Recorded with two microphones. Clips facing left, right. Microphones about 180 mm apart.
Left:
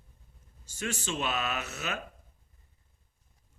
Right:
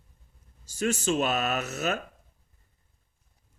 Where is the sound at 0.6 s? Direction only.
40° right (ahead or behind).